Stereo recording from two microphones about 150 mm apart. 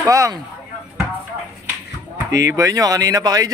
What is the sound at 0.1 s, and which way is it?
Speech, 20° right (ahead or behind).